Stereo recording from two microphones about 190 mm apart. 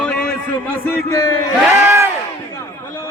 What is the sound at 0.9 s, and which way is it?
Speech, 15° left (ahead or behind).